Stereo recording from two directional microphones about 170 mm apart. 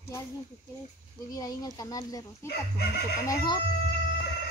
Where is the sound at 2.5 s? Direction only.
75° left (ahead or behind).